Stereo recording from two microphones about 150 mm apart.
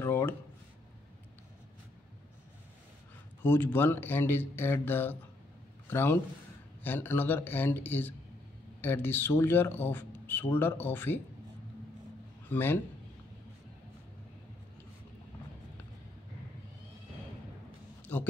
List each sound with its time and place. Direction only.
0.0 s a sound: 15° left (ahead or behind)
3.4 s a man's voice: 15° left (ahead or behind)
12.4 s a man's voice: 15° left (ahead or behind)
18.1 s a man's voice: 10° left (ahead or behind)